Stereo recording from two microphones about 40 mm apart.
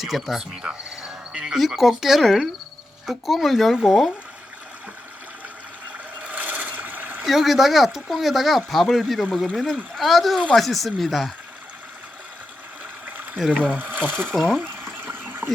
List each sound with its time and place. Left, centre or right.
0.0 s speech: centre
0.5 s speech: centre
1.5 s speech: centre
6.2 s a sound: right
7.3 s speech: centre
9.6 s speech: centre
10.0 s speech: centre
13.1 s trickle: right
13.6 s speech: right
14.6 s water: right